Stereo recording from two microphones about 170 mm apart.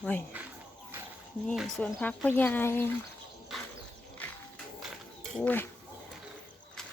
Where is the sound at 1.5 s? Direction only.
Centre (ahead or behind).